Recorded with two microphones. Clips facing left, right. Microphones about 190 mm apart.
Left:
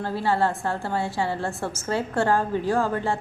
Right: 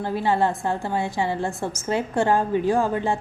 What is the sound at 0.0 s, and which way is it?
A woman's voice, 15° right (ahead or behind).